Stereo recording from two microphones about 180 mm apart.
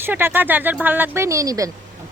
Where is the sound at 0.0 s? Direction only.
10° right (ahead or behind).